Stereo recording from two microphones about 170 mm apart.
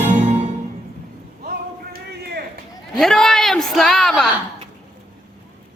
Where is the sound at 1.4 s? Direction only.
60° right (ahead or behind).